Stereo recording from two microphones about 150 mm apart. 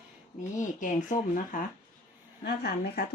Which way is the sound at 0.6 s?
55° left (ahead or behind).